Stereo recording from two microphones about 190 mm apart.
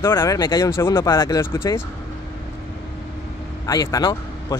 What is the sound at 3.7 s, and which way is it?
Speech, 20° left (ahead or behind).